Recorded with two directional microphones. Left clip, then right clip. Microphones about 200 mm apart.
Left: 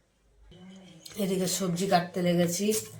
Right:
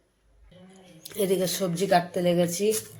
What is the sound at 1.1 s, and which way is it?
Speech, 40° right (ahead or behind).